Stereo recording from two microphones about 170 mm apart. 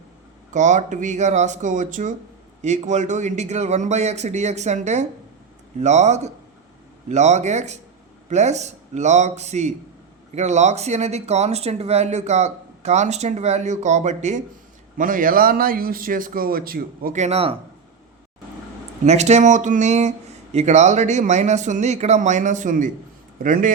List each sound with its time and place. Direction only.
0.5 s a man's voice: 45° right (ahead or behind)
19.0 s speech: 40° right (ahead or behind)